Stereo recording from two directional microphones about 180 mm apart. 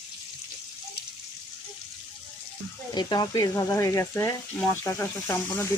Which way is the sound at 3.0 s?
25° left (ahead or behind).